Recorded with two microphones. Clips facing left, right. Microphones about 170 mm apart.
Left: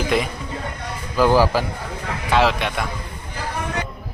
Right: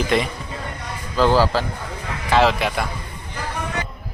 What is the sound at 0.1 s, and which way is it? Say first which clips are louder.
Speech: right 1 dB; centre (ahead or behind).